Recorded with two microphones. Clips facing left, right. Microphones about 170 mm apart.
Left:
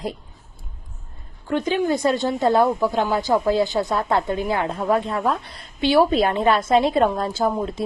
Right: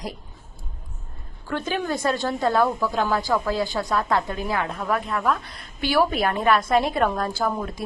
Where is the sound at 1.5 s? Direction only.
20° left (ahead or behind).